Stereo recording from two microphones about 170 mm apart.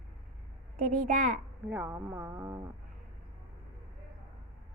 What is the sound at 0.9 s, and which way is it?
Speech, 50° right (ahead or behind).